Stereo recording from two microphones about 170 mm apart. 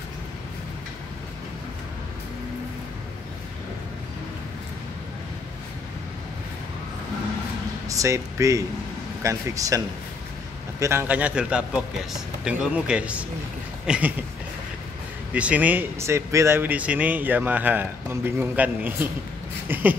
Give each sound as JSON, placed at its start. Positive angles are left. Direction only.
{"t": 7.9, "sound": "a man's voice", "side_deg": -20}
{"t": 10.8, "sound": "speech", "side_deg": -15}
{"t": 15.3, "sound": "speech", "side_deg": -10}